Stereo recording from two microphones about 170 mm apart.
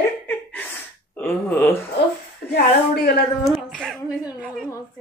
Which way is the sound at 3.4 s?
Centre (ahead or behind).